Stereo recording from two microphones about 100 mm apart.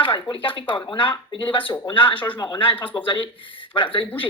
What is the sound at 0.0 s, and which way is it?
Speech, 55° left (ahead or behind).